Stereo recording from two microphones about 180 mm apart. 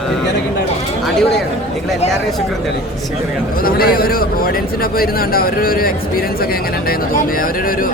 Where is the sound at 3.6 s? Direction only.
55° left (ahead or behind).